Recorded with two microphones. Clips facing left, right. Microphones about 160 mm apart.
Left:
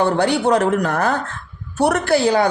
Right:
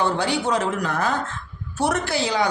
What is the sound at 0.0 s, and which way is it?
A woman's voice, 60° left (ahead or behind).